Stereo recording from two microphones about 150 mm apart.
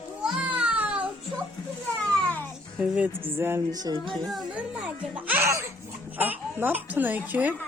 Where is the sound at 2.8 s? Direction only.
10° right (ahead or behind).